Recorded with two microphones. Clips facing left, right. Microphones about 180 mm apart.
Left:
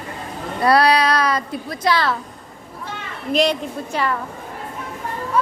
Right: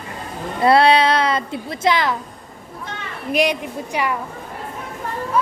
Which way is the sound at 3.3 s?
15° right (ahead or behind).